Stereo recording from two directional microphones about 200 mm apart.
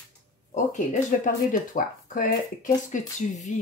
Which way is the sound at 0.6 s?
40° left (ahead or behind).